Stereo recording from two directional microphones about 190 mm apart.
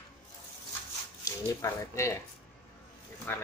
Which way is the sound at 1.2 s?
15° left (ahead or behind).